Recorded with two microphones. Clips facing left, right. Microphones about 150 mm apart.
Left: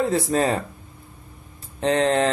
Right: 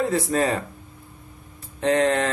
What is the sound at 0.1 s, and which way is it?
Speech, 30° left (ahead or behind).